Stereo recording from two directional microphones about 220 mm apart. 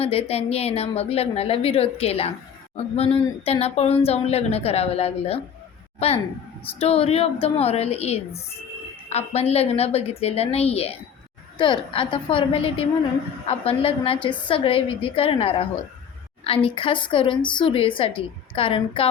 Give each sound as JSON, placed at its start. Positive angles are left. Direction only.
{"t": 0.0, "sound": "speech", "side_deg": 25}
{"t": 6.7, "sound": "speech", "side_deg": 25}